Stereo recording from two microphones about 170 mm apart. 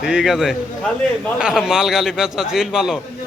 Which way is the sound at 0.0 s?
5° right (ahead or behind).